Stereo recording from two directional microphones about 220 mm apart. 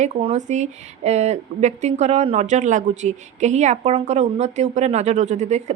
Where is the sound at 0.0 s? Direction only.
30° right (ahead or behind).